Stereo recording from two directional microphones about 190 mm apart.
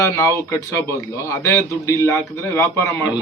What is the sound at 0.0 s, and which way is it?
Speech, 15° left (ahead or behind).